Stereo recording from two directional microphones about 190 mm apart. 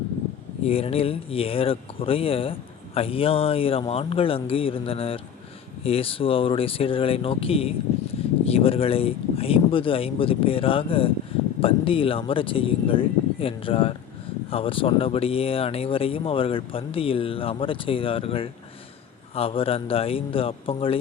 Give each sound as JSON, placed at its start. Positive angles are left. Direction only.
{"t": 0.6, "sound": "speech", "side_deg": 30}